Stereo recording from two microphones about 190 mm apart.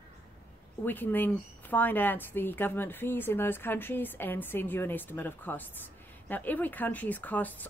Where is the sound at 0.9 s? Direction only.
10° left (ahead or behind).